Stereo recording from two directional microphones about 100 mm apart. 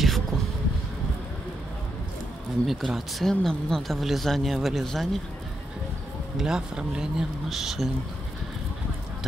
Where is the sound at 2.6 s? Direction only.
Centre (ahead or behind).